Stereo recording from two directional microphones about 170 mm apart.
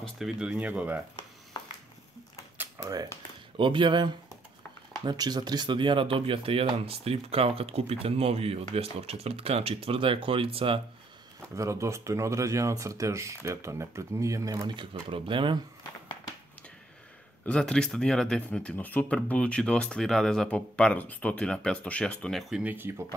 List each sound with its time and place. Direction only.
0.0 s speech: 5° right (ahead or behind)
2.8 s speech: 25° right (ahead or behind)
11.5 s speech: 15° right (ahead or behind)
17.5 s speech: 5° left (ahead or behind); by 23.0 s 15° right (ahead or behind)